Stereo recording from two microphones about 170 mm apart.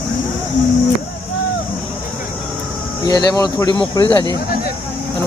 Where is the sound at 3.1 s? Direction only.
25° left (ahead or behind).